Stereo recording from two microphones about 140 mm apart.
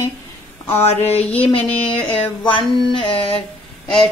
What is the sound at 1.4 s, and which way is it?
Music, 40° left (ahead or behind).